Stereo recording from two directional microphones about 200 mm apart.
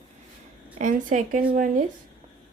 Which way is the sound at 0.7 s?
40° right (ahead or behind).